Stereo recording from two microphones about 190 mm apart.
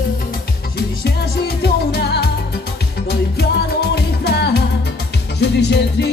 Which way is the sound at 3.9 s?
60° left (ahead or behind).